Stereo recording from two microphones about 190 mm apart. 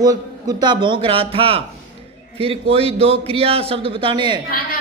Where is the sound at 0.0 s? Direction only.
20° right (ahead or behind).